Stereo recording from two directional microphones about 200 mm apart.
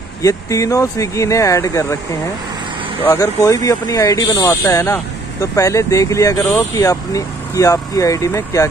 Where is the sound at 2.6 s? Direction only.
25° right (ahead or behind).